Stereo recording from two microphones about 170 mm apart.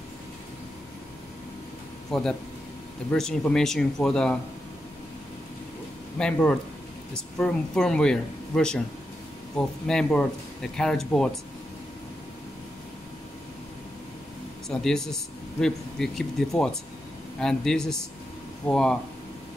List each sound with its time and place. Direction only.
2.0 s speech: 5° left (ahead or behind)
6.1 s speech: 5° left (ahead or behind)
14.7 s speech: 5° left (ahead or behind)